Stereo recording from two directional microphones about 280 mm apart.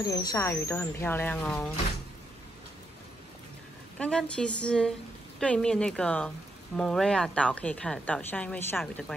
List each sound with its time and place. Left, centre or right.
0.0 s speech: centre
4.0 s a woman's voice: centre